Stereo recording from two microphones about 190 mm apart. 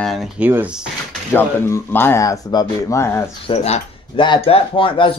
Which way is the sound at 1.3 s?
10° left (ahead or behind).